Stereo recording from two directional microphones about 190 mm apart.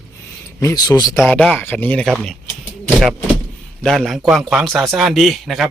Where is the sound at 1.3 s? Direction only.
10° left (ahead or behind).